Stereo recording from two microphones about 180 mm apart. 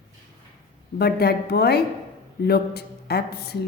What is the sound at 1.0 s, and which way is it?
A woman's voice, 60° left (ahead or behind).